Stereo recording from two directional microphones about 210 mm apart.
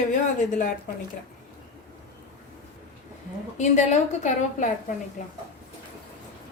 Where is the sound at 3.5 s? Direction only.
35° left (ahead or behind).